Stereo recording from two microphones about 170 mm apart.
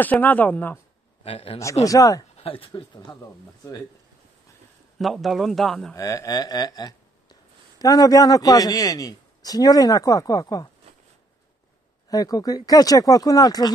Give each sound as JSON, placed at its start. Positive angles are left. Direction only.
{"t": 0.0, "sound": "speech", "side_deg": 10}
{"t": 1.2, "sound": "speech", "side_deg": 35}
{"t": 1.9, "sound": "a man's voice", "side_deg": 20}
{"t": 2.3, "sound": "a man's voice", "side_deg": 35}
{"t": 4.9, "sound": "a man's voice", "side_deg": 0}
{"t": 5.9, "sound": "a man's voice", "side_deg": 20}
{"t": 12.1, "sound": "a man's voice", "side_deg": 20}